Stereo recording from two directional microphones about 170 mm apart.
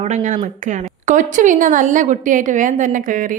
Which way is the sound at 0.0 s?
45° right (ahead or behind).